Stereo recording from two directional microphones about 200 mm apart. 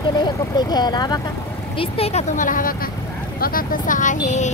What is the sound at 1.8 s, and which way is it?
Speech, 30° left (ahead or behind).